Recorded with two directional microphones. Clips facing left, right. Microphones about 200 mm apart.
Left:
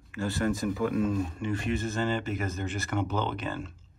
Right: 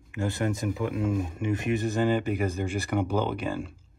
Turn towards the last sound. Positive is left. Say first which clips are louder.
# right 3 dB
turn(degrees=-10)  # may be behind; listen again after turning